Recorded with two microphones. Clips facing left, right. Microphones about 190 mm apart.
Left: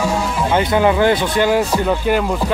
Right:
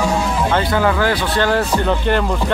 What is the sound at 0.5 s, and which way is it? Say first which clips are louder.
Speech: left 4 dB; 20° left (ahead or behind).